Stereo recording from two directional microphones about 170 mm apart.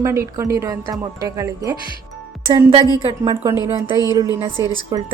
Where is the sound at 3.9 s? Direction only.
25° left (ahead or behind).